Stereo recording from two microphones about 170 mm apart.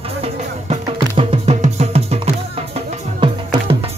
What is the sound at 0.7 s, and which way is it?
Music, 35° right (ahead or behind).